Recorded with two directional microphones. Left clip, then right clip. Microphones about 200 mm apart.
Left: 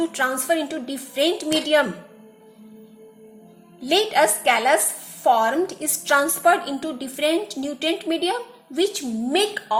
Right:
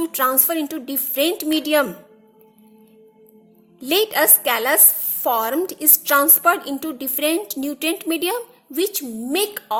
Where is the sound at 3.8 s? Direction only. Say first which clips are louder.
Even; 50° right (ahead or behind).